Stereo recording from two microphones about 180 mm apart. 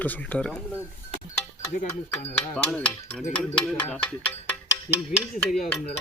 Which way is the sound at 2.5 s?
10° left (ahead or behind).